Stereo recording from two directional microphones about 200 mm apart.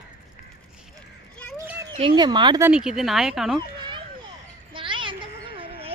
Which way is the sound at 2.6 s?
5° right (ahead or behind).